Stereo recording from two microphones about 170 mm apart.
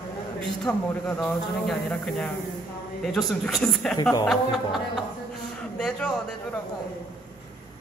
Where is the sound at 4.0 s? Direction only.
20° left (ahead or behind).